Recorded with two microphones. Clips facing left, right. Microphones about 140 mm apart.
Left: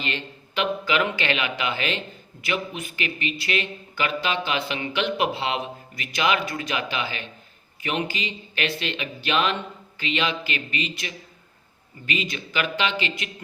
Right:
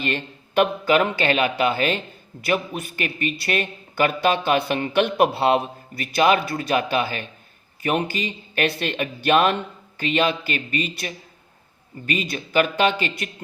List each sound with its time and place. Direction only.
0.0 s speech: 50° right (ahead or behind)